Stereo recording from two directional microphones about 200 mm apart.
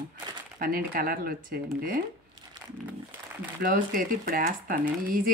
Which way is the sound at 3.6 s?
45° right (ahead or behind).